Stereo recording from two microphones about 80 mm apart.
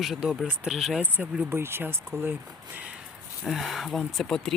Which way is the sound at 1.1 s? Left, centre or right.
Right.